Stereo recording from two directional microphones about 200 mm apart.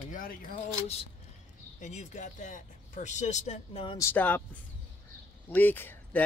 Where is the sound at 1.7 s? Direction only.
35° left (ahead or behind).